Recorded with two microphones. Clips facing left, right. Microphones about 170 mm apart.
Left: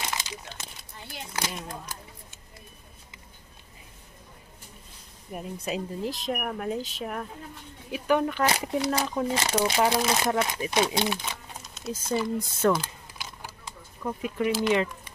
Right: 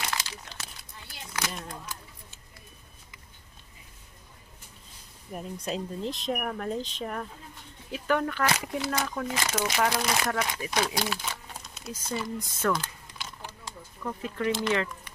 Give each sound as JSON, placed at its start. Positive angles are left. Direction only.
{"t": 0.0, "sound": "crumpling", "side_deg": 20}
{"t": 1.3, "sound": "speech", "side_deg": 30}
{"t": 5.3, "sound": "speech", "side_deg": 5}
{"t": 7.9, "sound": "speech", "side_deg": 15}
{"t": 12.8, "sound": "typing", "side_deg": 10}
{"t": 14.0, "sound": "speech", "side_deg": 15}